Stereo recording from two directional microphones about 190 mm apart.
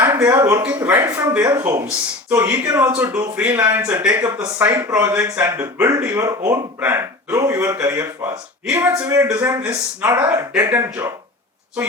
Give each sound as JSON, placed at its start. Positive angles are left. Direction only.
{"t": 0.0, "sound": "speech", "side_deg": -15}